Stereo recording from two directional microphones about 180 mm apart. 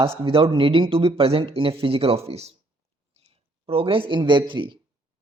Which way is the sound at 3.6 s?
30° right (ahead or behind).